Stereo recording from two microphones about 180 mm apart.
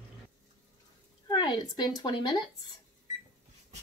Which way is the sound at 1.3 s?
25° left (ahead or behind).